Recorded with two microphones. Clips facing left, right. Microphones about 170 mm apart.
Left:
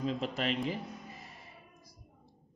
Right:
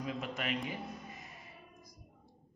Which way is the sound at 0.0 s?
30° left (ahead or behind).